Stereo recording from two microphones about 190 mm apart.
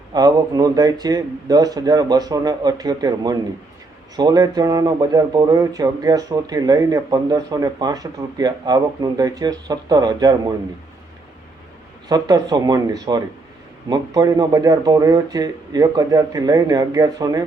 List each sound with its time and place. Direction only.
0.1 s speech: 20° right (ahead or behind)
12.0 s speech: 20° right (ahead or behind)